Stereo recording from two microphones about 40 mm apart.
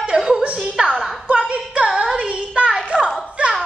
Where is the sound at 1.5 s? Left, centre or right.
Right.